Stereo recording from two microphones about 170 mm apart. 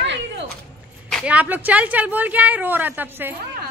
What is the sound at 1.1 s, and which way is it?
Speech, 5° right (ahead or behind).